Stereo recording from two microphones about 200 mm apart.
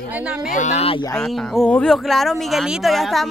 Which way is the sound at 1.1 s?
Centre (ahead or behind).